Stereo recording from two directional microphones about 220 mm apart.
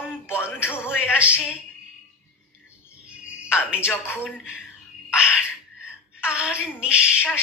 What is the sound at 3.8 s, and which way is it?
Speech, 10° left (ahead or behind).